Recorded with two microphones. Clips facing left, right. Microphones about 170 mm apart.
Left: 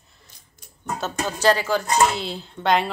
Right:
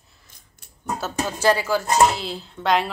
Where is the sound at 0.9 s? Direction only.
5° right (ahead or behind).